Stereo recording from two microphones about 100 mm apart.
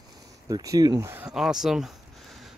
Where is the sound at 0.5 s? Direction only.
40° right (ahead or behind).